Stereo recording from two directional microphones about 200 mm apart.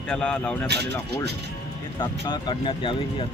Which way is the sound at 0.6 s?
55° right (ahead or behind).